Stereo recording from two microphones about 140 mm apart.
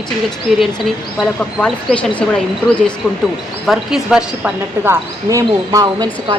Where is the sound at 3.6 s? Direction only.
5° right (ahead or behind).